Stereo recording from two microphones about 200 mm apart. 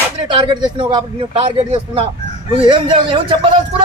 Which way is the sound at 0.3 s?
25° right (ahead or behind).